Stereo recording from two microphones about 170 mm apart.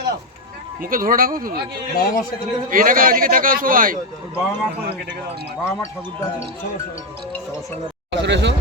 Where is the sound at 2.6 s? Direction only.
55° right (ahead or behind).